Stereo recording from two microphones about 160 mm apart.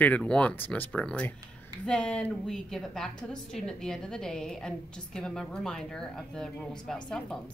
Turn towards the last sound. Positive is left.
turn(degrees=5)  # may be behind; listen again after turning